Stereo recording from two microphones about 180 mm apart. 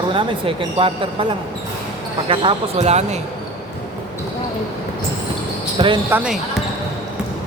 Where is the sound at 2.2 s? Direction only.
35° right (ahead or behind).